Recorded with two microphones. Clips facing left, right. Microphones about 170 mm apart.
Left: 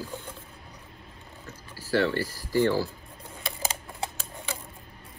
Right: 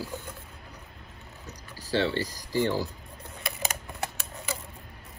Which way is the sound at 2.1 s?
15° right (ahead or behind).